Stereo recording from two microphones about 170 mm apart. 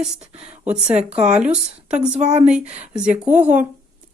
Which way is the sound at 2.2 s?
40° right (ahead or behind).